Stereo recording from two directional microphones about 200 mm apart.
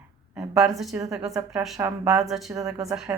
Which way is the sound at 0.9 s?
15° right (ahead or behind).